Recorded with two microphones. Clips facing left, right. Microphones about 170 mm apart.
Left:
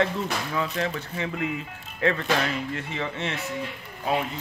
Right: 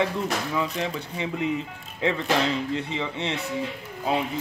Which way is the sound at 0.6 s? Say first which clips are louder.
Even; 15° right (ahead or behind).